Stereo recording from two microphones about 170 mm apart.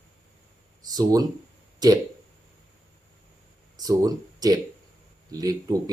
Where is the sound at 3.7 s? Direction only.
20° right (ahead or behind).